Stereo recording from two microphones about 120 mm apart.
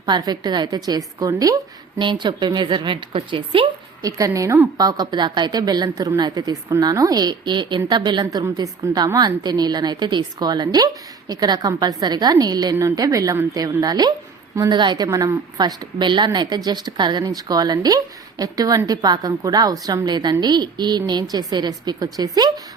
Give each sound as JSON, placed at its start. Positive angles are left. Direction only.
{"t": 0.0, "sound": "a woman's voice", "side_deg": -35}
{"t": 2.0, "sound": "a woman's voice", "side_deg": -40}
{"t": 4.0, "sound": "a woman's voice", "side_deg": -25}